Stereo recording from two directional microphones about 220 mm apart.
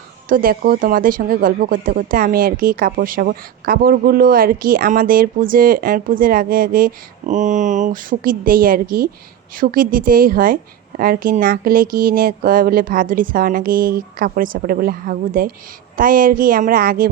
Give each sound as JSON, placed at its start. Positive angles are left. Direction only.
{"t": 0.3, "sound": "speech", "side_deg": -40}